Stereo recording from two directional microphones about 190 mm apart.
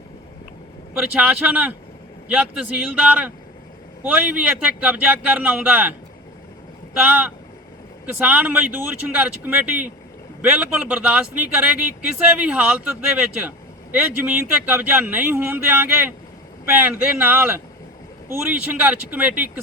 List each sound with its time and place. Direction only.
0.9 s a man's voice: 5° right (ahead or behind)